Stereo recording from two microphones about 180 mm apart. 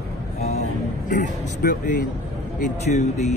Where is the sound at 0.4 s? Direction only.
40° left (ahead or behind).